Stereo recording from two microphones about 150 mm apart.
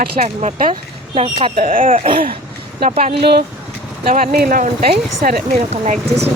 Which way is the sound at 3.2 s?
90° right.